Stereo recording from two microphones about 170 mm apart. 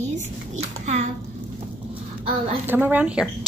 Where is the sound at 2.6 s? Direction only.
10° right (ahead or behind).